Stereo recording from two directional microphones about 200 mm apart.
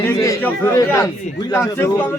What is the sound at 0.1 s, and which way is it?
Chatter, 15° left (ahead or behind).